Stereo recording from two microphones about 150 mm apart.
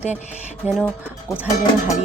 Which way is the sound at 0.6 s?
10° right (ahead or behind).